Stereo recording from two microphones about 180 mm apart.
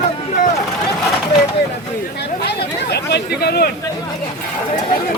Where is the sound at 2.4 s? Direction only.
65° left (ahead or behind).